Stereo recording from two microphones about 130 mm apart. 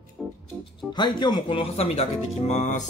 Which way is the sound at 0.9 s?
35° left (ahead or behind).